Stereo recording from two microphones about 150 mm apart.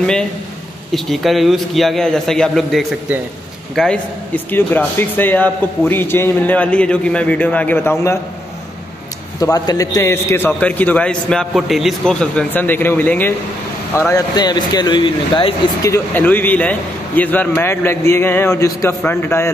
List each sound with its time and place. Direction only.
0.9 s a man's voice: centre (ahead or behind); by 8.2 s 15° left (ahead or behind)
9.4 s a man's voice: 25° left (ahead or behind)
15.8 s a man's voice: 15° left (ahead or behind)